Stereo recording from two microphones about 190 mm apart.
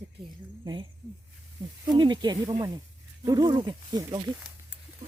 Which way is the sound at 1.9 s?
25° right (ahead or behind).